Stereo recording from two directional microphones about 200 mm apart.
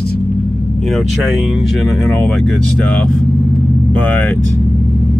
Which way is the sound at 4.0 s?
10° left (ahead or behind).